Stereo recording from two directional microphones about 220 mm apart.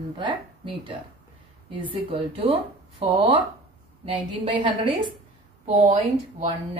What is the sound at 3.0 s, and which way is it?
Speech, 25° right (ahead or behind).